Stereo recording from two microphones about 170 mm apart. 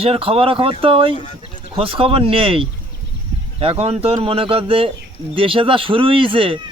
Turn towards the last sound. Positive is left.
turn(degrees=-30)  # may be behind; listen again after turning